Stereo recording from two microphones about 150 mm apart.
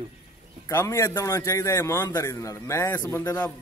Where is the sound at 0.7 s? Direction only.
20° left (ahead or behind).